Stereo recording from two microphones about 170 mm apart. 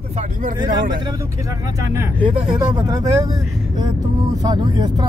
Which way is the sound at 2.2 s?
25° right (ahead or behind).